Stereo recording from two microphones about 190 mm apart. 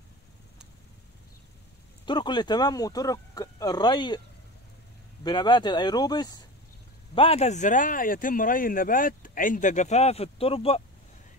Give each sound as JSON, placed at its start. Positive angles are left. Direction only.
{"t": 2.0, "sound": "speech", "side_deg": 25}
{"t": 5.2, "sound": "speech", "side_deg": 25}
{"t": 7.2, "sound": "speech", "side_deg": 35}